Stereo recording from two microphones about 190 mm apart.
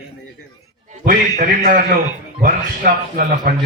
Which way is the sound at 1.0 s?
45° right (ahead or behind).